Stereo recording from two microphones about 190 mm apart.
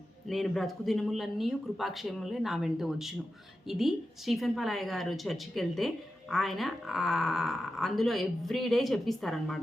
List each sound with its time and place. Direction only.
0.3 s a woman's voice: centre (ahead or behind)